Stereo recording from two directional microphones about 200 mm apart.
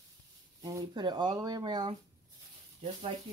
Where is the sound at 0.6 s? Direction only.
20° right (ahead or behind).